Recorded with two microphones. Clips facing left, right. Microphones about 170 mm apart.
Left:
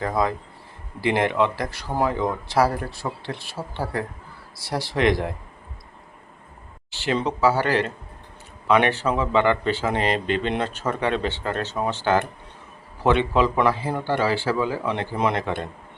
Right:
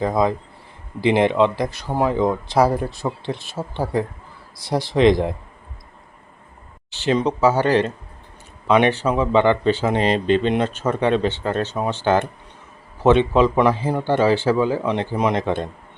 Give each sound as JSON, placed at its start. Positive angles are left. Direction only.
{"t": 0.0, "sound": "speech", "side_deg": -20}
{"t": 6.9, "sound": "speech", "side_deg": -20}